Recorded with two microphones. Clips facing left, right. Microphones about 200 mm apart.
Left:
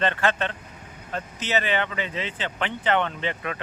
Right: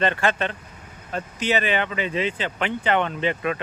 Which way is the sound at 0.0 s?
15° right (ahead or behind).